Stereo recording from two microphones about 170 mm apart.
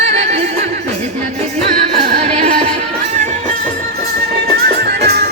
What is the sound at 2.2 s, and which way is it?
Music, 40° right (ahead or behind).